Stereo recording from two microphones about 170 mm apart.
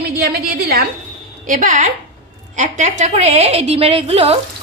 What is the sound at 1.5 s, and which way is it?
A woman's voice, 50° right (ahead or behind).